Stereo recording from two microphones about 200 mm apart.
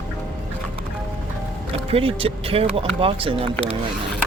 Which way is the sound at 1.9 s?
30° right (ahead or behind).